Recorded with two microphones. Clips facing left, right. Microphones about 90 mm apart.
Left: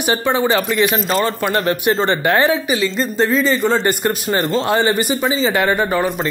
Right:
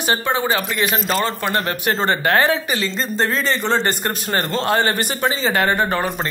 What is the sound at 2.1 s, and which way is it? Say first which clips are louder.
Speech: right 1 dB; 20° left (ahead or behind).